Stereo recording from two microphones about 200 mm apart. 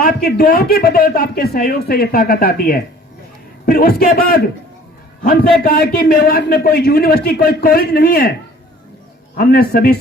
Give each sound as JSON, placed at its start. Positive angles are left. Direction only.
{"t": 0.0, "sound": "a man's voice", "side_deg": 50}
{"t": 9.4, "sound": "a man's voice", "side_deg": 50}